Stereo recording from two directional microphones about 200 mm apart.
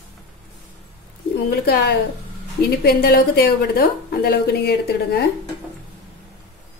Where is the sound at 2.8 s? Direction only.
50° left (ahead or behind).